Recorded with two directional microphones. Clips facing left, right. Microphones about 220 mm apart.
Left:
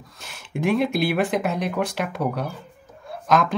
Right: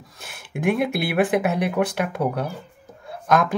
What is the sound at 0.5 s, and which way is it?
Speech, centre (ahead or behind).